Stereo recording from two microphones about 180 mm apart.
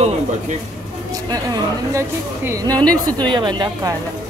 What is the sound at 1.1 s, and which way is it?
Speech, 20° right (ahead or behind).